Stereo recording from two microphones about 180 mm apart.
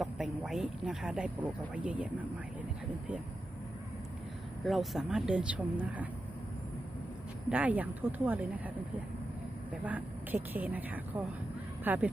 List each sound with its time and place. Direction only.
0.0 s speech: centre (ahead or behind)
4.6 s speech: centre (ahead or behind)
7.5 s speech: 10° right (ahead or behind)
9.8 s speech: 10° right (ahead or behind)